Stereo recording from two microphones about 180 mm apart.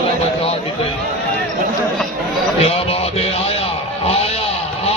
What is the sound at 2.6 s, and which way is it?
Music, 35° left (ahead or behind).